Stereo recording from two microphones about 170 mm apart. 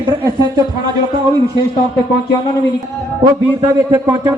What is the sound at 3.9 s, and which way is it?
Speech, 15° right (ahead or behind).